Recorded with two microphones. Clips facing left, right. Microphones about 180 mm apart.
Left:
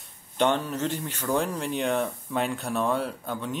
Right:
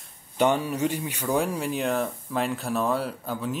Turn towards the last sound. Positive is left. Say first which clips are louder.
# right 2 dB
turn(degrees=-5)  # may be behind; listen again after turning